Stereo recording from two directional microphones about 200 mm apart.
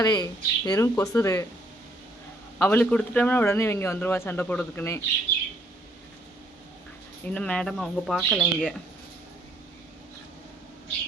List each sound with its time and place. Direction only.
0.0 s a man's voice: 20° left (ahead or behind)
2.6 s a man's voice: 10° left (ahead or behind)
7.3 s speech: 5° left (ahead or behind)